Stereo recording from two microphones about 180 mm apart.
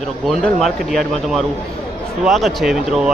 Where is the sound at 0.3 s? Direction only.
Centre (ahead or behind).